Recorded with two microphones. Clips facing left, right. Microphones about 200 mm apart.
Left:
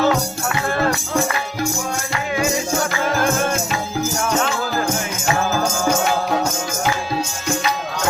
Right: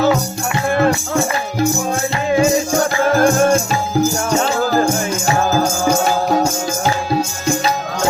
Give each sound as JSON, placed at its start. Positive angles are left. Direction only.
{"t": 3.2, "sound": "music", "side_deg": -40}
{"t": 6.1, "sound": "music", "side_deg": -35}